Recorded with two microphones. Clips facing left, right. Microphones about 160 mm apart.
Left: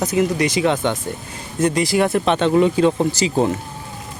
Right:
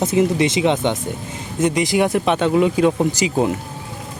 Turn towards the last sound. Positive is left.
turn(degrees=-15)  # may be behind; listen again after turning